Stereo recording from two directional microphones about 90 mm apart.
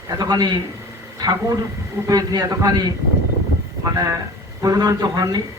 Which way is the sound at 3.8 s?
40° right (ahead or behind).